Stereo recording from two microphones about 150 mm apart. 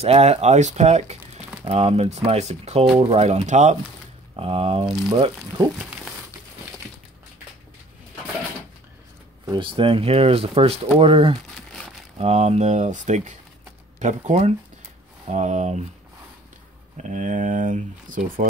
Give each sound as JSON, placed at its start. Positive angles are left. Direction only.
{"t": 0.0, "sound": "speech", "side_deg": -45}
{"t": 5.1, "sound": "speech", "side_deg": -30}
{"t": 9.5, "sound": "speech", "side_deg": -35}
{"t": 16.9, "sound": "speech", "side_deg": -55}